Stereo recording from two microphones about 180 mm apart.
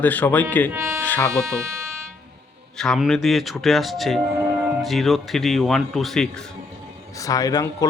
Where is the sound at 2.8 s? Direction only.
Centre (ahead or behind).